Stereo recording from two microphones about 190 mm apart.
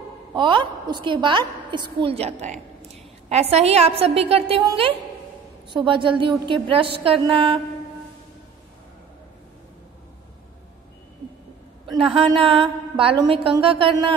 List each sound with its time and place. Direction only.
0.3 s a woman's voice: 25° right (ahead or behind)
11.8 s a woman's voice: 30° right (ahead or behind)